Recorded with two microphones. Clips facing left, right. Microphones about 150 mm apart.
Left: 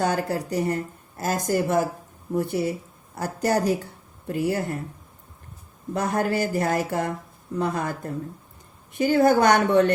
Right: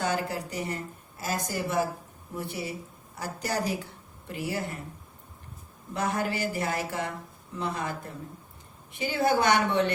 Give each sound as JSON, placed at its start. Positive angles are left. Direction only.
{"t": 0.0, "sound": "speech", "side_deg": 45}
{"t": 5.9, "sound": "speech", "side_deg": 45}